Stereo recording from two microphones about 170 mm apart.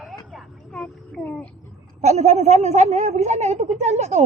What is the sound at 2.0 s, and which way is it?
A woman's voice, 40° right (ahead or behind).